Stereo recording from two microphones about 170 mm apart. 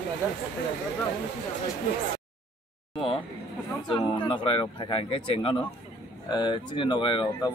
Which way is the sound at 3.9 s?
25° left (ahead or behind).